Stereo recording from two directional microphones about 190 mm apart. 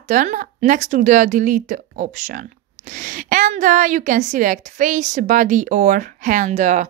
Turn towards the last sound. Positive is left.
turn(degrees=-40)  # may be behind; listen again after turning